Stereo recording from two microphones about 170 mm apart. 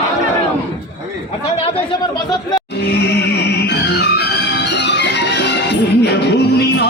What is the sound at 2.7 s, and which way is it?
Music, 90° left.